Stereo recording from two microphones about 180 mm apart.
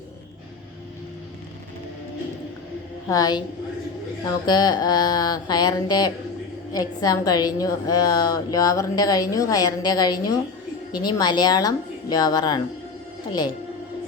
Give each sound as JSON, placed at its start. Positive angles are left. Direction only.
{"t": 3.1, "sound": "a woman's voice", "side_deg": 20}
{"t": 4.4, "sound": "a woman's voice", "side_deg": 25}